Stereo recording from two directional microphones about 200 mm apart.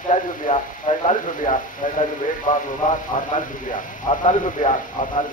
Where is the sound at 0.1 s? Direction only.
40° left (ahead or behind).